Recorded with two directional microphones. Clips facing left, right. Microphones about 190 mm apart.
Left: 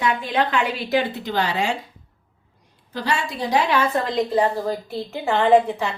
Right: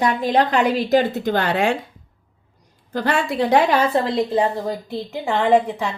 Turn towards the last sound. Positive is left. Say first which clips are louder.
# left 1 dB
turn(degrees=-15)  # may be behind; listen again after turning